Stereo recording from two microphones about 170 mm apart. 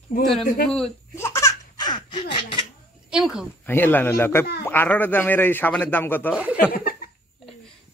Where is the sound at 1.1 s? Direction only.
15° left (ahead or behind).